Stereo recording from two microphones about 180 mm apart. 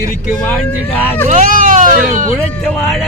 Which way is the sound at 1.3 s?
45° right (ahead or behind).